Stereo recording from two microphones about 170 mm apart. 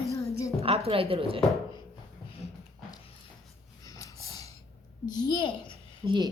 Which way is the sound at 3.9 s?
20° left (ahead or behind).